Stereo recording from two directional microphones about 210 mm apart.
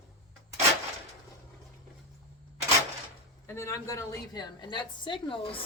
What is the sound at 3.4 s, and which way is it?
A woman's voice, 15° left (ahead or behind).